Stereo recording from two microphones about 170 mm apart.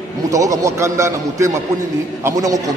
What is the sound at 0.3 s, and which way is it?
A man's voice, 20° right (ahead or behind).